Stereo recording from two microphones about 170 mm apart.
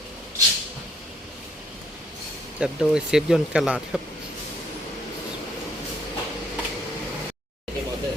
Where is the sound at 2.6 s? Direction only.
5° right (ahead or behind).